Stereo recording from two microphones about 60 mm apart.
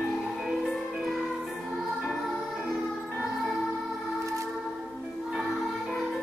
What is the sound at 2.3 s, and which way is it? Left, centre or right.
Music, centre.